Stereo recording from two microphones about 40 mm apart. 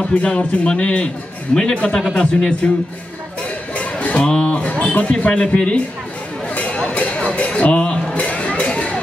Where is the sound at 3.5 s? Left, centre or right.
Left.